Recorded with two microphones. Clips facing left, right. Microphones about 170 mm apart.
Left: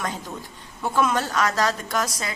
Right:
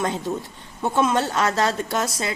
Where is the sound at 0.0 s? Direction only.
25° right (ahead or behind).